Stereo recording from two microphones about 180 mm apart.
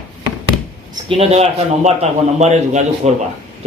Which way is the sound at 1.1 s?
35° right (ahead or behind).